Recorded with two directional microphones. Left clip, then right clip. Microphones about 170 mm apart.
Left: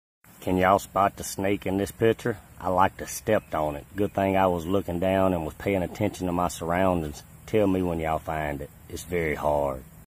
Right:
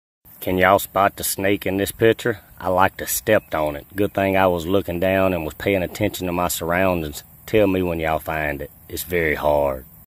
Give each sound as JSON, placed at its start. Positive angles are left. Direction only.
{"t": 0.4, "sound": "speech", "side_deg": -20}